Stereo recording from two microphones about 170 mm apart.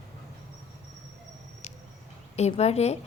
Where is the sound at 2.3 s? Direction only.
40° left (ahead or behind).